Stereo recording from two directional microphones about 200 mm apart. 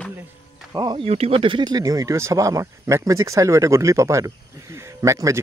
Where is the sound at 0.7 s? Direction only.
25° right (ahead or behind).